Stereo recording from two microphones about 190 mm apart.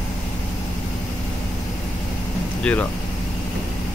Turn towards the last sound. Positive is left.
turn(degrees=5)  # may be behind; listen again after turning